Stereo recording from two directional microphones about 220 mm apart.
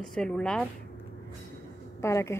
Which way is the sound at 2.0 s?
10° left (ahead or behind).